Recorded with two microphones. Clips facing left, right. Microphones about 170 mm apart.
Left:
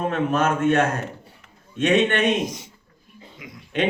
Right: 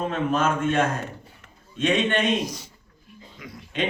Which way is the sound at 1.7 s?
65° left (ahead or behind).